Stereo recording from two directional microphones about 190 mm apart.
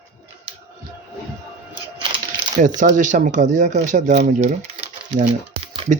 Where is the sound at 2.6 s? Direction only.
45° right (ahead or behind).